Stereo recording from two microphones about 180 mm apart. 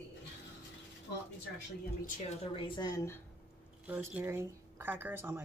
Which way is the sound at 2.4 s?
30° left (ahead or behind).